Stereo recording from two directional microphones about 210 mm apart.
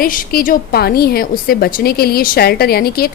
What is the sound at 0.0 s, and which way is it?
A woman's voice, 40° left (ahead or behind).